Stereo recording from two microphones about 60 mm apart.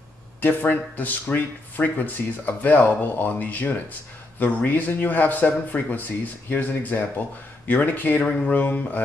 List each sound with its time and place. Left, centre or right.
0.4 s speech: left